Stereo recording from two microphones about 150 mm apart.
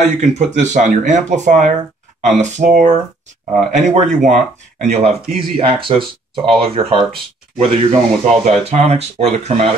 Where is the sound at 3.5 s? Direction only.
55° right (ahead or behind); by 7.9 s 35° right (ahead or behind).